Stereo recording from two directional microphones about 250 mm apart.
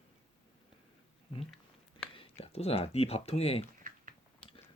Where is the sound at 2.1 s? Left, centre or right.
Left.